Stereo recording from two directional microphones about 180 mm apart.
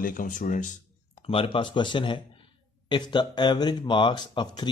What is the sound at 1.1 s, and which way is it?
Speech, 30° left (ahead or behind).